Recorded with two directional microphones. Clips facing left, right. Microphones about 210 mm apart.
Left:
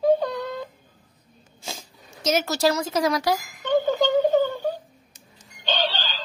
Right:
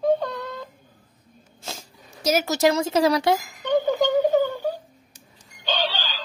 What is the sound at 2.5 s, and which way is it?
Speech, 20° right (ahead or behind).